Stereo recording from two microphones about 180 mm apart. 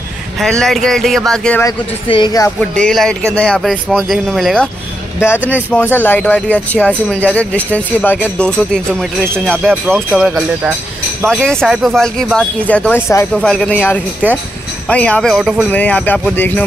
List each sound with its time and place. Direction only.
0.4 s speech: centre (ahead or behind)
2.0 s speech: 25° left (ahead or behind)
2.8 s speech: 5° left (ahead or behind)